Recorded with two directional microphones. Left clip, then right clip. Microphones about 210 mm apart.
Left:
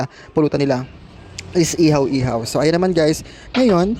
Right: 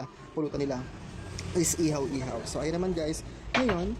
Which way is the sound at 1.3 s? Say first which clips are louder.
Left 11 dB; 35° left (ahead or behind).